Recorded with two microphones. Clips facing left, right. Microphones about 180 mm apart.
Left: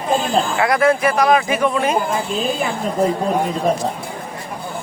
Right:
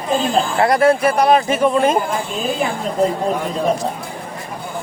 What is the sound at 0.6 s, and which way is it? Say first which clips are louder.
Speech: right 3 dB; 35° right (ahead or behind).